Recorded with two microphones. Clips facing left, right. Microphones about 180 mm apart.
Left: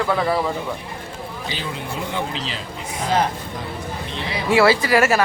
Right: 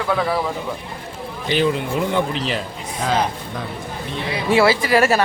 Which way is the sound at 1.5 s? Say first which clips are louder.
Right 12 dB; 60° right (ahead or behind).